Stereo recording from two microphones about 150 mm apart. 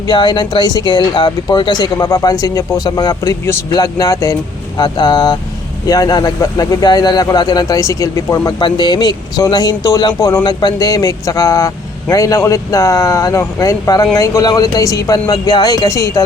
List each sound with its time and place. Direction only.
0.1 s a man's voice: 30° left (ahead or behind)